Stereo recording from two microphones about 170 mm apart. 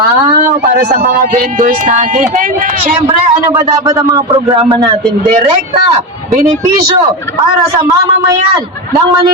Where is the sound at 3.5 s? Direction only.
15° right (ahead or behind).